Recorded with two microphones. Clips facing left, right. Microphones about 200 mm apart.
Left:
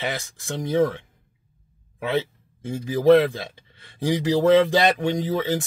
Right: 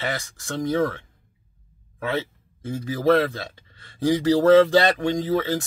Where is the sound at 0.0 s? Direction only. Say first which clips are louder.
Even; 15° left (ahead or behind).